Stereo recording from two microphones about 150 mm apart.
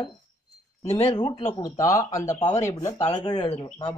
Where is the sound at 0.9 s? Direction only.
45° left (ahead or behind).